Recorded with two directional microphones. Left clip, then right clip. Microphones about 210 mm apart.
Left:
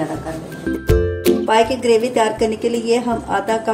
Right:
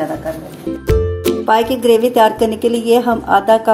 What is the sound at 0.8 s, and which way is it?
Music, centre (ahead or behind).